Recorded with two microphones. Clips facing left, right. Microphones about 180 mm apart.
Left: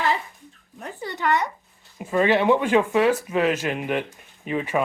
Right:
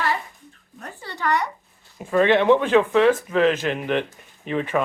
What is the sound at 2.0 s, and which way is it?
Speech, 10° left (ahead or behind).